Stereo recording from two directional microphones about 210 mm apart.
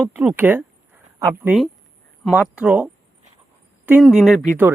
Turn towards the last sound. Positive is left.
turn(degrees=0)  # may be behind; listen again after turning